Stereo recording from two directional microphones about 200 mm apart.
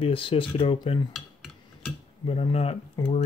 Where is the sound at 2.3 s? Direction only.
30° left (ahead or behind).